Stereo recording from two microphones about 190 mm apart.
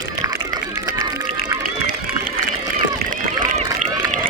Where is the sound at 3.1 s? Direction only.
45° right (ahead or behind).